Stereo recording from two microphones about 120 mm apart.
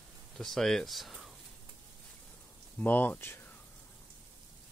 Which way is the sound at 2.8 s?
15° left (ahead or behind).